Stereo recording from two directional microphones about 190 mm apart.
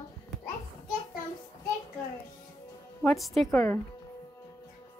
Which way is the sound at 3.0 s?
Centre (ahead or behind).